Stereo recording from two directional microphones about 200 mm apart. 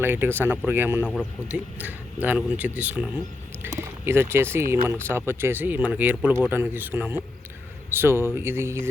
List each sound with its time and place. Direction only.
0.0 s speech: 10° right (ahead or behind)
1.0 s speech: 5° left (ahead or behind)
1.5 s speech: 10° right (ahead or behind)